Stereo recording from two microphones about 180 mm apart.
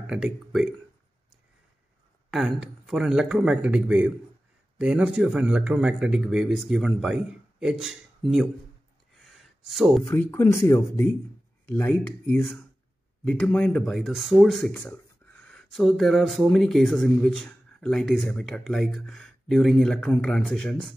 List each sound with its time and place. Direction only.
0.0 s speech: 5° right (ahead or behind)
2.3 s speech: centre (ahead or behind)
9.7 s speech: centre (ahead or behind)
10.0 s speech: 15° left (ahead or behind)